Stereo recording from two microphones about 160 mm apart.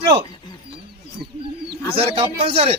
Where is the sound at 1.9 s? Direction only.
35° right (ahead or behind).